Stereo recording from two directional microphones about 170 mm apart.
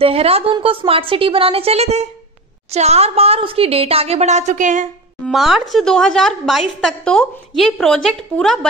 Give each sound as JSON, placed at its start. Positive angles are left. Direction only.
{"t": 0.0, "sound": "a woman's voice", "side_deg": -35}
{"t": 5.2, "sound": "a woman's voice", "side_deg": 0}